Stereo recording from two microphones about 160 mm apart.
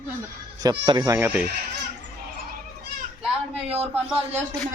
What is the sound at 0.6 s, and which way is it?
Speech, 25° right (ahead or behind).